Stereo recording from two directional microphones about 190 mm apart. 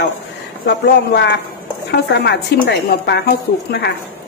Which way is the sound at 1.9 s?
60° left (ahead or behind).